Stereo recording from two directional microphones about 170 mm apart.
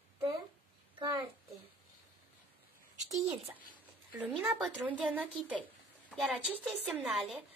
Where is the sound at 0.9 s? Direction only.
30° right (ahead or behind).